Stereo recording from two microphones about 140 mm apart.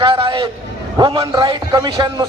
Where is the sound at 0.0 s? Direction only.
40° right (ahead or behind).